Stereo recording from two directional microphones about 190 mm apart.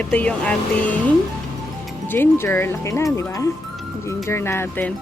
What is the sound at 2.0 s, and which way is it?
Speech, 10° left (ahead or behind).